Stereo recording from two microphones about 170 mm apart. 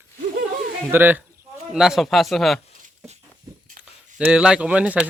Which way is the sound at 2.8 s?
40° right (ahead or behind).